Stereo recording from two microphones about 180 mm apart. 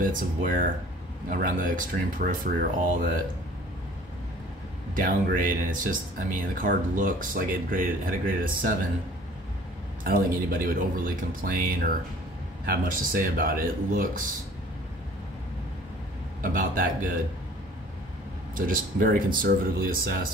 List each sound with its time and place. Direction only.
0.0 s speech: 50° right (ahead or behind)
4.9 s speech: 50° right (ahead or behind)
10.0 s speech: 55° right (ahead or behind)
16.3 s speech: 50° right (ahead or behind)
18.5 s speech: 50° right (ahead or behind)